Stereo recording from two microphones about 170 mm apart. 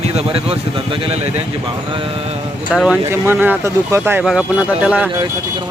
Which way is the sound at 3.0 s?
15° right (ahead or behind).